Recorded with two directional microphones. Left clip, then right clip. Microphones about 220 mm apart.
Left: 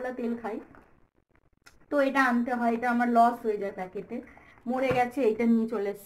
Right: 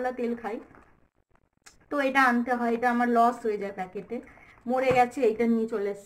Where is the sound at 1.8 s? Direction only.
Centre (ahead or behind).